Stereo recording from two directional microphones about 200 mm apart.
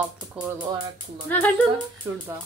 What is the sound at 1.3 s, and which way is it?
Speech, 10° left (ahead or behind).